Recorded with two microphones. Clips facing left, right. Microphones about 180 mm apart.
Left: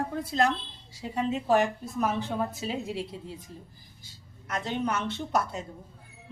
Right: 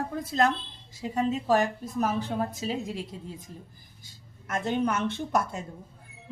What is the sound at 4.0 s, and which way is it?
A woman's voice, 50° right (ahead or behind).